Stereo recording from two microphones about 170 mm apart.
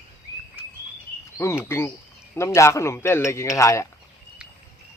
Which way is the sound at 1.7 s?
15° left (ahead or behind).